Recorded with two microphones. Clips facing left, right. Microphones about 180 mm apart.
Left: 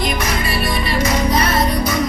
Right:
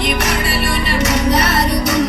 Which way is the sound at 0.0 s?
70° right (ahead or behind).